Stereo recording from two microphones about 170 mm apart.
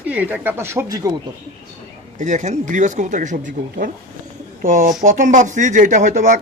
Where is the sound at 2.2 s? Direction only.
45° right (ahead or behind).